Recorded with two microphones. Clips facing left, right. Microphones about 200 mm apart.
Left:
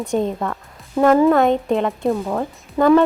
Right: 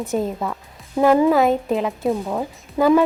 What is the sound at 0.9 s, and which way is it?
Speech, 15° right (ahead or behind).